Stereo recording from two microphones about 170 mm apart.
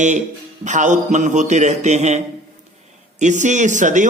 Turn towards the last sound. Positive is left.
turn(degrees=-45)  # may be behind; listen again after turning